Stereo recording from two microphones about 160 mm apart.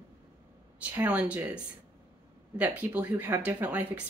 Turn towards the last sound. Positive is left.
turn(degrees=-10)  # may be behind; listen again after turning